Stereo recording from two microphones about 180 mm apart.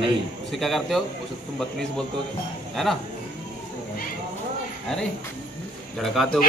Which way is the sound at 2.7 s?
Centre (ahead or behind).